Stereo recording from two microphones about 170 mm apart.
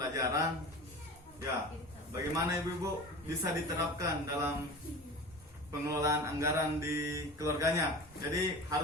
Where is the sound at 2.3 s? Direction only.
20° right (ahead or behind).